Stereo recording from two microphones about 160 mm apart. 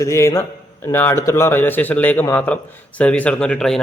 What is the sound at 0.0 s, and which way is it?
A man's voice, 20° left (ahead or behind).